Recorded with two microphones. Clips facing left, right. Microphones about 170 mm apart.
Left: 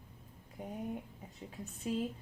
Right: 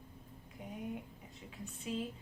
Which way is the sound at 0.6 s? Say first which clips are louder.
Left 4 dB; 45° left (ahead or behind).